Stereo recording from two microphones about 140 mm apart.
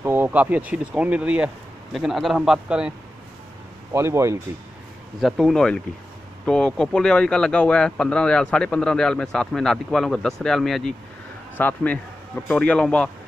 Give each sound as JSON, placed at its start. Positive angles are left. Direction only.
{"t": 0.0, "sound": "speech", "side_deg": -15}
{"t": 3.9, "sound": "speech", "side_deg": -20}
{"t": 5.2, "sound": "speech", "side_deg": 5}